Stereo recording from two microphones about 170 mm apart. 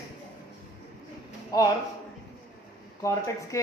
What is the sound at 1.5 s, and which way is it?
Speech, 20° left (ahead or behind).